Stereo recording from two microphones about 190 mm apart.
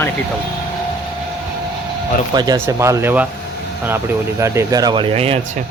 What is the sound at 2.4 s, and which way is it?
Speech, 15° right (ahead or behind).